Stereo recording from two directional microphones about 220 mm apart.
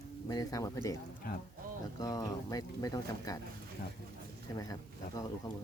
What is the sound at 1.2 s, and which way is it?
Speech, 40° left (ahead or behind).